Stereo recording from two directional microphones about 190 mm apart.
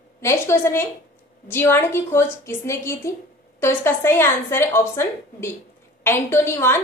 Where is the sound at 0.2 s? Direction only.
15° left (ahead or behind).